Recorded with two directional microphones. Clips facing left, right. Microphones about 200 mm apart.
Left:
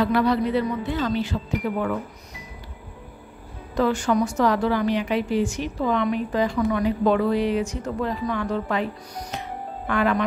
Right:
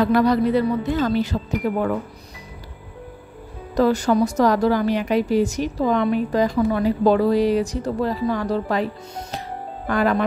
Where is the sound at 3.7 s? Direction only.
40° right (ahead or behind).